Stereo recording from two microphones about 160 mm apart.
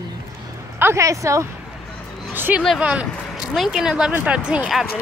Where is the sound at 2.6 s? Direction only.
5° right (ahead or behind).